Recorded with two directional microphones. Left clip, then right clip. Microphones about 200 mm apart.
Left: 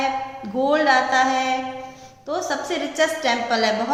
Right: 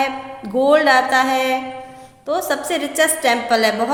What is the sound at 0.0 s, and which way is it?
A woman's voice, 45° right (ahead or behind).